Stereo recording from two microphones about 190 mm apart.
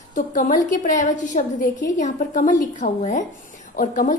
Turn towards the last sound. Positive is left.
turn(degrees=45)  # may be behind; listen again after turning